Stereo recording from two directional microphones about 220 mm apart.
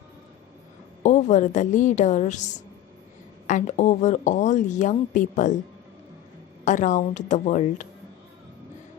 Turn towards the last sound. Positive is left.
turn(degrees=35)  # may be behind; listen again after turning